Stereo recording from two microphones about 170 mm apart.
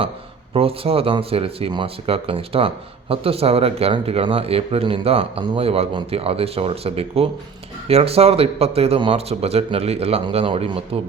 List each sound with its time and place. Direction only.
0.5 s speech: 35° right (ahead or behind)